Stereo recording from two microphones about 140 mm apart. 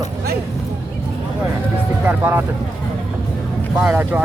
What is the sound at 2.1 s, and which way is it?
Speech, 15° right (ahead or behind).